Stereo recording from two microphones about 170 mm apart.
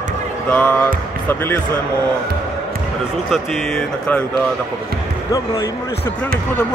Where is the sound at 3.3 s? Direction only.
Centre (ahead or behind).